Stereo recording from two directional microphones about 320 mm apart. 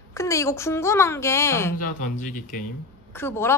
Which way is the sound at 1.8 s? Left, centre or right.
Left.